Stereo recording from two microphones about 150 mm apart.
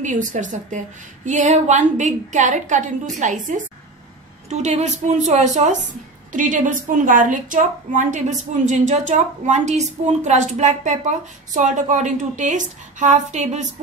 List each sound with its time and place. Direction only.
0.0 s a woman's voice: 55° right (ahead or behind)